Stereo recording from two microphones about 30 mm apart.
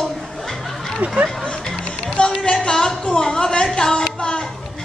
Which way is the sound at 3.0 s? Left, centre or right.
Left.